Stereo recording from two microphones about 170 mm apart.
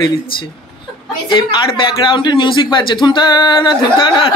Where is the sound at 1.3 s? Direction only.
30° left (ahead or behind).